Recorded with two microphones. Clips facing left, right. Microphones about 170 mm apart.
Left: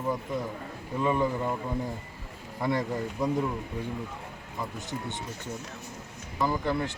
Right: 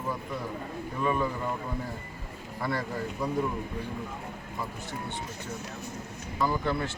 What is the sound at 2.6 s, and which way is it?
Speech, 20° left (ahead or behind).